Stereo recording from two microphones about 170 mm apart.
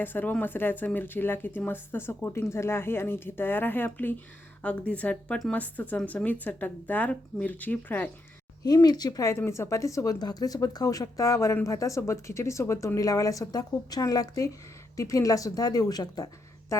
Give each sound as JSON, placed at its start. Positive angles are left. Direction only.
{"t": 0.0, "sound": "speech", "side_deg": 10}
{"t": 8.6, "sound": "speech", "side_deg": 25}